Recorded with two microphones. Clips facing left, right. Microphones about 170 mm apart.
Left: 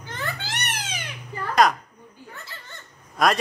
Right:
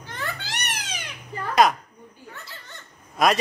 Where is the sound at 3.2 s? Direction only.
Centre (ahead or behind).